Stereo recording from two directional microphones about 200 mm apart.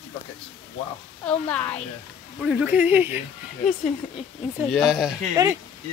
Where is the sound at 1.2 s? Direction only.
5° left (ahead or behind).